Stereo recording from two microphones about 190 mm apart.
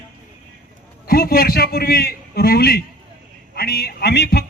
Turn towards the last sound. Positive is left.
turn(degrees=55)  # may be behind; listen again after turning